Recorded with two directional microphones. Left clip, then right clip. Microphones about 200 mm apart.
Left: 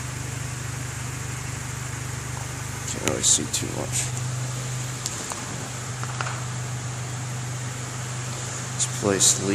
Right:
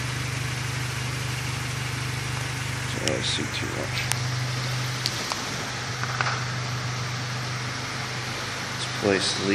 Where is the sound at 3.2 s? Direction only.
30° left (ahead or behind).